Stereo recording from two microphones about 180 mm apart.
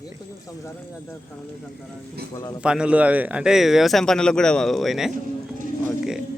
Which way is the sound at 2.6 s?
5° right (ahead or behind).